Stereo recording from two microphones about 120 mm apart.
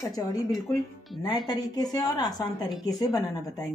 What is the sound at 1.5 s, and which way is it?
Speech, 30° left (ahead or behind).